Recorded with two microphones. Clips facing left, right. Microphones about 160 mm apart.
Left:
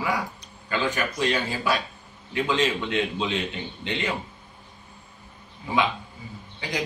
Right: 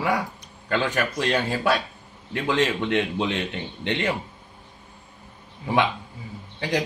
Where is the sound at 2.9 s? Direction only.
60° right (ahead or behind).